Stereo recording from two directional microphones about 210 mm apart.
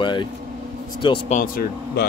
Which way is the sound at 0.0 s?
20° left (ahead or behind).